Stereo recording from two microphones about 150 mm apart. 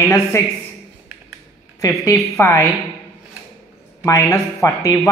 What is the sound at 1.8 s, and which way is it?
Speech, 20° left (ahead or behind).